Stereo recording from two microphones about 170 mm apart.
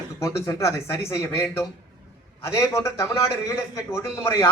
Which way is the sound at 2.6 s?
15° left (ahead or behind).